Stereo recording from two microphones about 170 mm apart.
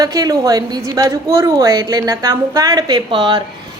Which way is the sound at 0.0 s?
20° right (ahead or behind).